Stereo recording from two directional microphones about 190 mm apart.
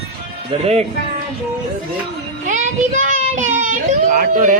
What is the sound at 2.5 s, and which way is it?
A child's voice, 40° right (ahead or behind).